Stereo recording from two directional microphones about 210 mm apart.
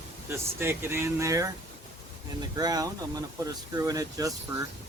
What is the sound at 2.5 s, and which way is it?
Speech, 15° right (ahead or behind).